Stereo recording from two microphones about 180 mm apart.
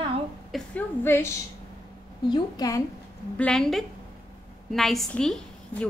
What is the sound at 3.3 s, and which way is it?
A woman's voice, 5° left (ahead or behind).